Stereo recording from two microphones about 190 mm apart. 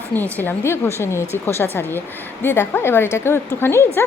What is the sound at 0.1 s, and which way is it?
A woman's voice, 10° left (ahead or behind).